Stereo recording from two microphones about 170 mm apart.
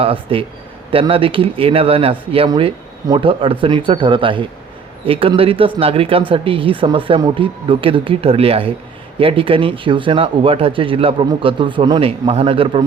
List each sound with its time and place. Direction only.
0.0 s speech: 35° right (ahead or behind)